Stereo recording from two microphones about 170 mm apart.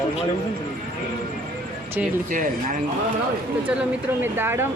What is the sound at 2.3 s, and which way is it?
Speech, 50° right (ahead or behind).